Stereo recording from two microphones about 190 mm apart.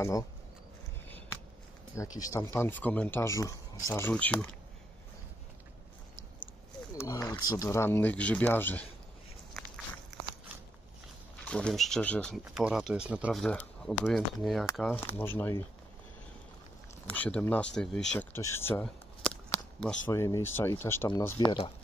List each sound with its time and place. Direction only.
2.0 s speech: 15° left (ahead or behind)
6.9 s speech: 15° left (ahead or behind)
11.4 s speech: 5° left (ahead or behind)
12.5 s speech: 5° right (ahead or behind); by 15.6 s 10° left (ahead or behind)
17.1 s speech: 10° left (ahead or behind)